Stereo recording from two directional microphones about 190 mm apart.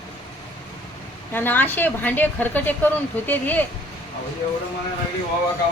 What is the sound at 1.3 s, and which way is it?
A woman's voice, 10° left (ahead or behind).